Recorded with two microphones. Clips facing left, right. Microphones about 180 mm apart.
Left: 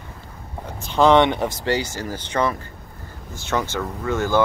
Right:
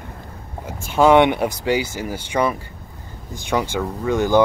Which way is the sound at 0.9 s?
10° right (ahead or behind).